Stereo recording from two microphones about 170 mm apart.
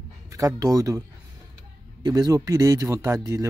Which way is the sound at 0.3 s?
20° right (ahead or behind).